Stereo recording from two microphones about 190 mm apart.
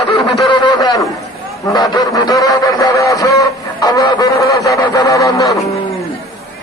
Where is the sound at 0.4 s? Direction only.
25° left (ahead or behind).